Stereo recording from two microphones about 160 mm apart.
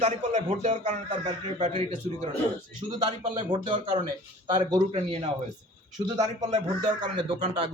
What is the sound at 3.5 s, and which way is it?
Speech, 30° right (ahead or behind).